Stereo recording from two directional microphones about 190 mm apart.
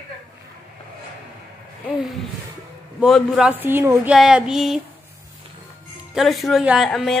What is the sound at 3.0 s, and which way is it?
A woman's voice, centre (ahead or behind).